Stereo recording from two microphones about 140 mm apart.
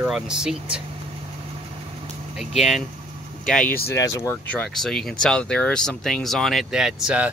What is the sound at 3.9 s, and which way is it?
Speech, 25° left (ahead or behind).